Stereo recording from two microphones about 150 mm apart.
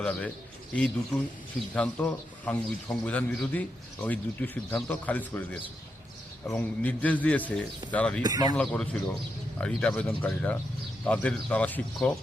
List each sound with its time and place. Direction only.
0.0 s a man's voice: 10° left (ahead or behind)
2.0 s a man's voice: 10° left (ahead or behind)
8.2 s speech: 25° right (ahead or behind)
8.5 s a man's voice: 5° left (ahead or behind)